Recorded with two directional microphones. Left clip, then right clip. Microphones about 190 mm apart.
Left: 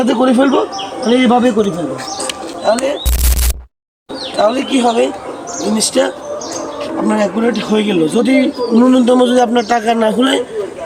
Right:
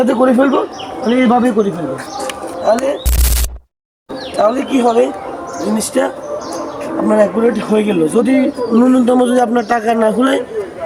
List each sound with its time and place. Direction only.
0.0 s a man's voice: 10° right (ahead or behind)
2.2 s music: centre (ahead or behind)
4.5 s a man's voice: 10° right (ahead or behind)
7.1 s speech: 10° right (ahead or behind)